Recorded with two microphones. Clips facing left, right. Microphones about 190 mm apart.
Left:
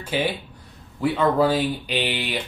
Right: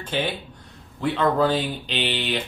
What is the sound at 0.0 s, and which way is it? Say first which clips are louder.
Speech: left 2 dB; 10° left (ahead or behind).